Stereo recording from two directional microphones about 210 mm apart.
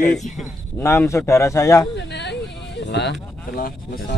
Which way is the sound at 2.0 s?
55° left (ahead or behind).